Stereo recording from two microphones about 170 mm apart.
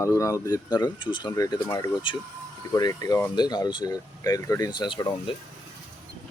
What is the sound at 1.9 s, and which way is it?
Speech, 30° left (ahead or behind).